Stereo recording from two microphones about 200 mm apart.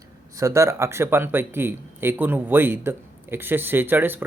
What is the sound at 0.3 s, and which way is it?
Speech, 15° right (ahead or behind).